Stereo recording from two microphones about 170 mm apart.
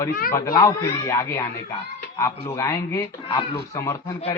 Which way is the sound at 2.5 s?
20° left (ahead or behind).